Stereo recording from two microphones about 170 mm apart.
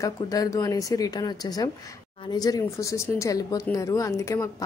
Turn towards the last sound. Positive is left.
turn(degrees=15)  # may be behind; listen again after turning